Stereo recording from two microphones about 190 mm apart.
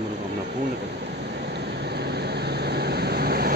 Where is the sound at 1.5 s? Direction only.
60° right (ahead or behind).